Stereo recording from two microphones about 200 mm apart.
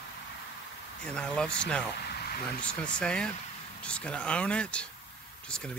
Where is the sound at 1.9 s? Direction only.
50° left (ahead or behind).